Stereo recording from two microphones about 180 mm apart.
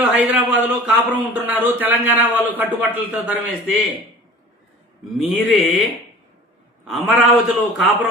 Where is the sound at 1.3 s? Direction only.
10° right (ahead or behind).